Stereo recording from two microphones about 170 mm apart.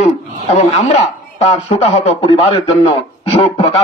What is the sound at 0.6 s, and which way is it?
Speech, 40° left (ahead or behind).